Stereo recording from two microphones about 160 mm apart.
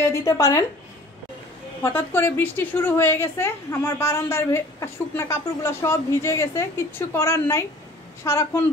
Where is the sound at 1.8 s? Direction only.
15° left (ahead or behind).